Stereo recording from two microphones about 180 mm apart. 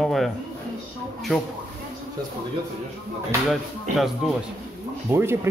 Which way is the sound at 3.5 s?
Centre (ahead or behind).